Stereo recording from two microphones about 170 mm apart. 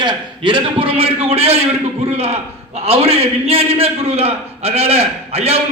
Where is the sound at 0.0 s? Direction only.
30° right (ahead or behind).